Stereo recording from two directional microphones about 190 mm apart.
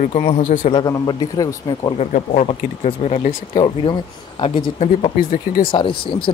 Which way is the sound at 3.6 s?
25° left (ahead or behind).